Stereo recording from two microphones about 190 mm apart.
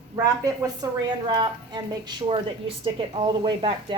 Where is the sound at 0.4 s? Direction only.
15° right (ahead or behind).